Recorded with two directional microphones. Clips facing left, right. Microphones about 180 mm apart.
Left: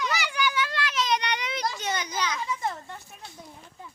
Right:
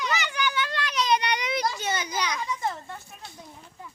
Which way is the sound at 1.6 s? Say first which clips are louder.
Right 1 dB; 5° right (ahead or behind).